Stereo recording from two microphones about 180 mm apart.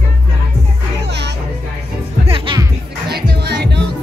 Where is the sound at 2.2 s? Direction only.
30° right (ahead or behind).